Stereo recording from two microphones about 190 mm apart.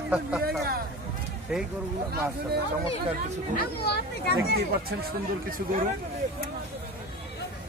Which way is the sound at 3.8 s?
55° left (ahead or behind).